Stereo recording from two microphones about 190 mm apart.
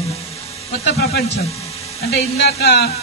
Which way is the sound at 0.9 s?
55° left (ahead or behind).